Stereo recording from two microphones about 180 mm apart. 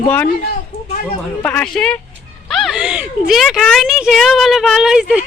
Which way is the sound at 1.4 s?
5° left (ahead or behind).